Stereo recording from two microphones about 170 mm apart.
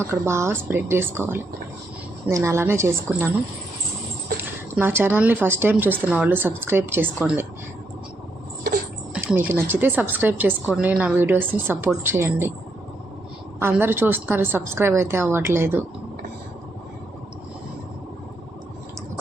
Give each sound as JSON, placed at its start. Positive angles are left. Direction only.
{"t": 0.1, "sound": "a woman's voice", "side_deg": -15}
{"t": 4.4, "sound": "a woman's voice", "side_deg": -10}
{"t": 9.1, "sound": "a woman's voice", "side_deg": -10}
{"t": 13.6, "sound": "a woman's voice", "side_deg": -15}